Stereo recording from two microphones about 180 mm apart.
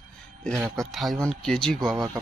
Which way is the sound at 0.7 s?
Centre (ahead or behind).